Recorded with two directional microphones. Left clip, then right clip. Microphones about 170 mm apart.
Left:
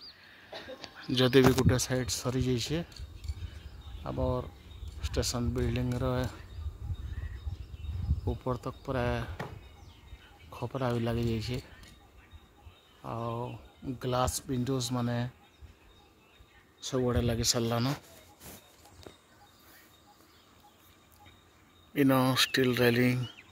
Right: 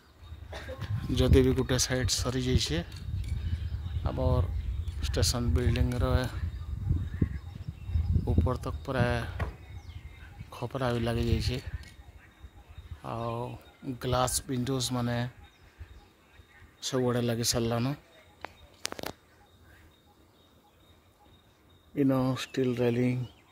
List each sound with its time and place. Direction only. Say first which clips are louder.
1.0 s speech: left 2 dB; 5° right (ahead or behind)
4.0 s speech: right 1 dB; centre (ahead or behind)
8.3 s speech: right 2 dB; 5° right (ahead or behind)
10.5 s speech: right 1 dB; 5° right (ahead or behind)
13.0 s speech: right 2 dB; 10° right (ahead or behind)
16.8 s speech: right 2 dB; 10° right (ahead or behind)
21.9 s speech: left 2 dB; 5° right (ahead or behind)